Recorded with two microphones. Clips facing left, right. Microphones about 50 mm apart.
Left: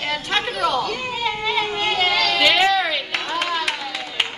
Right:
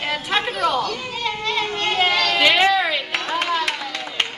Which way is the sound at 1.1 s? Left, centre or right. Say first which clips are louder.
Left 1 dB; centre.